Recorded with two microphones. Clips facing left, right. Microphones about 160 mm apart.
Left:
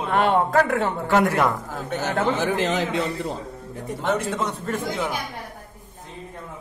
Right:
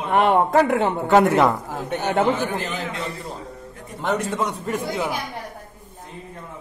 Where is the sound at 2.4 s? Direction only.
85° left.